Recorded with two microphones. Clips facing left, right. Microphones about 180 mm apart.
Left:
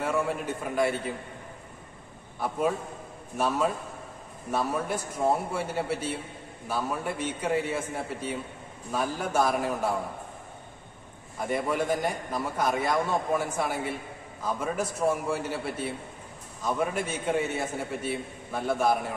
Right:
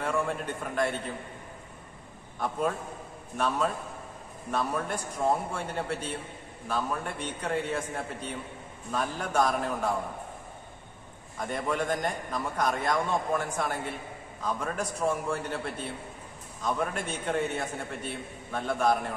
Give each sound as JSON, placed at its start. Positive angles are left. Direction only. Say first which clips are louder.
{"t": 0.0, "sound": "a man's voice", "louder": "left 2 dB", "side_deg": 5}
{"t": 2.4, "sound": "a man's voice", "louder": "left 2 dB", "side_deg": 5}
{"t": 11.3, "sound": "a man's voice", "louder": "left 3 dB", "side_deg": 5}